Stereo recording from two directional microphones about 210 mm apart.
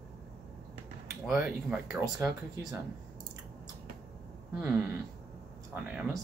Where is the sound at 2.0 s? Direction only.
15° right (ahead or behind).